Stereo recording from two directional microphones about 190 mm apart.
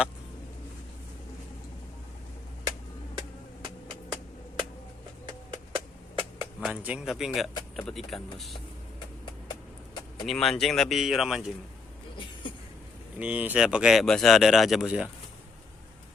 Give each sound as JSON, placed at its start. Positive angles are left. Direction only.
{"t": 3.2, "sound": "vehicle", "side_deg": -25}
{"t": 5.5, "sound": "a sound", "side_deg": -25}
{"t": 6.6, "sound": "speech", "side_deg": -5}
{"t": 10.2, "sound": "speech", "side_deg": 0}
{"t": 13.1, "sound": "speech", "side_deg": -5}